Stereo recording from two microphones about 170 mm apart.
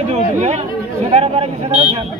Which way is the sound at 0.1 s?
40° right (ahead or behind).